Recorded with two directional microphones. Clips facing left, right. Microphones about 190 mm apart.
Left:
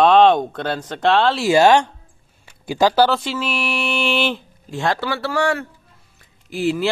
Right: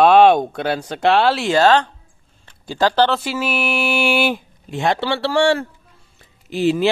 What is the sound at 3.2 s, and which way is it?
Speech, 5° right (ahead or behind).